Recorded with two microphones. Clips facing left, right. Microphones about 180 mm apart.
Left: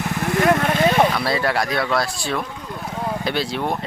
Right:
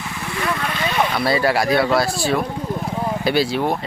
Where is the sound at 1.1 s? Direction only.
5° right (ahead or behind).